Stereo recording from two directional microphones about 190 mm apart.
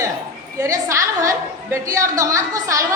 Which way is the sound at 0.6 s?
15° right (ahead or behind).